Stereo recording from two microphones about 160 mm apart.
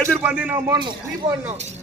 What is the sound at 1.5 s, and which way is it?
Speech, 45° right (ahead or behind).